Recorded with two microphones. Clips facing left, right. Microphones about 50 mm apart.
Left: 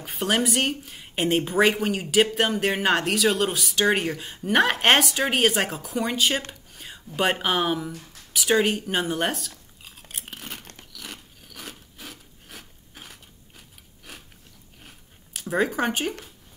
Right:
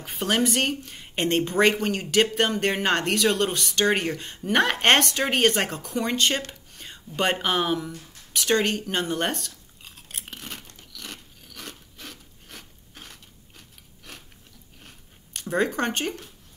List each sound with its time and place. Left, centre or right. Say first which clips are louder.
0.0 s speech: even; centre
6.7 s a sound: left 1 dB; centre
7.2 s speech: left 1 dB; centre
9.8 s crunch: even; centre
10.6 s a sound: left 3 dB; left
10.9 s filing: right 1 dB; centre
14.8 s zipper: left 1 dB; centre